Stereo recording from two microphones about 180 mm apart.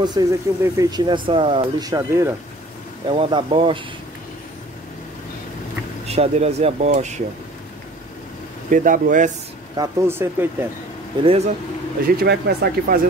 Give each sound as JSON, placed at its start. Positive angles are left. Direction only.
{"t": 0.0, "sound": "speech", "side_deg": -20}
{"t": 3.1, "sound": "speech", "side_deg": -30}
{"t": 6.0, "sound": "speech", "side_deg": -35}
{"t": 8.6, "sound": "speech", "side_deg": -50}
{"t": 9.8, "sound": "speech", "side_deg": -15}
{"t": 11.2, "sound": "speech", "side_deg": -35}
{"t": 12.1, "sound": "speech", "side_deg": -60}